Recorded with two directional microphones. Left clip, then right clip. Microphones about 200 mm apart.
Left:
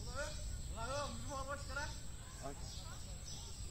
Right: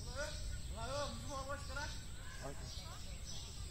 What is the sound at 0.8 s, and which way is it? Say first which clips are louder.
Snake: even; 5° right (ahead or behind).